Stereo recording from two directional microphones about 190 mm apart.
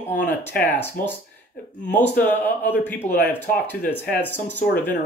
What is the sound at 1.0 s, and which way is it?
Speech, 50° left (ahead or behind).